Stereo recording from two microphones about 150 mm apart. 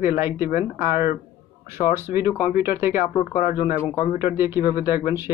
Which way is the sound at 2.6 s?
15° right (ahead or behind).